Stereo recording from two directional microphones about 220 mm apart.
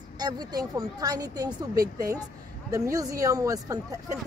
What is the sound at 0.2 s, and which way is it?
Speech, 20° right (ahead or behind).